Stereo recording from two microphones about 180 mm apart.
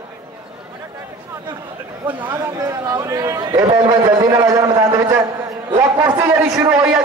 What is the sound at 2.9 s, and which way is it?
Speech, 20° right (ahead or behind).